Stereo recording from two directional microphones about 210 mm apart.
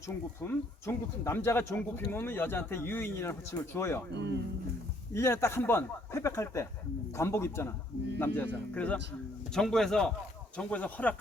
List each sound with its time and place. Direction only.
0.4 s speech: 10° left (ahead or behind)
4.1 s speech: 55° right (ahead or behind)
5.1 s speech: 10° left (ahead or behind)